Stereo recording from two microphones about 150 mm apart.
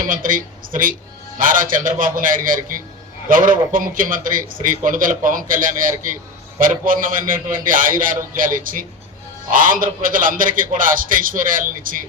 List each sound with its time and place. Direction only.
0.0 s a man's voice: 65° right (ahead or behind)